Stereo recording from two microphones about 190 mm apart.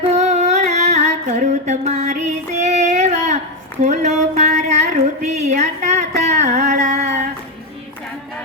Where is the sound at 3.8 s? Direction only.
40° right (ahead or behind).